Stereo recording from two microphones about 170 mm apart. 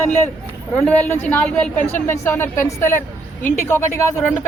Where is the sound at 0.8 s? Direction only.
10° left (ahead or behind).